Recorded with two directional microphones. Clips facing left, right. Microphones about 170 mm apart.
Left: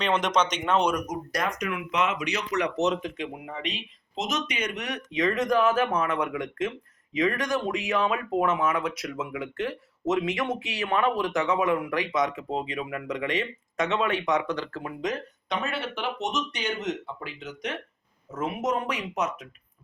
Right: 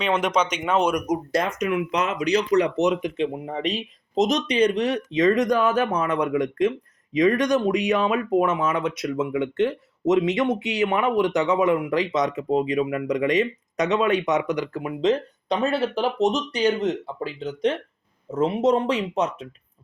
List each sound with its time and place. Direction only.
0.0 s speech: 10° right (ahead or behind)
1.0 s speech: 30° right (ahead or behind)
1.9 s speech: 40° right (ahead or behind)
2.8 s speech: 15° right (ahead or behind)
3.2 s speech: 35° right (ahead or behind); by 14.9 s 15° right (ahead or behind)
15.0 s speech: 30° right (ahead or behind)